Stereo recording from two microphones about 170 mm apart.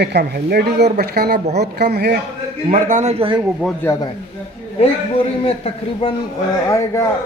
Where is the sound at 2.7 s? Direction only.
45° right (ahead or behind).